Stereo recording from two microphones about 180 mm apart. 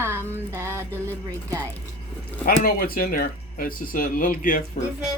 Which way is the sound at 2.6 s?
55° left (ahead or behind).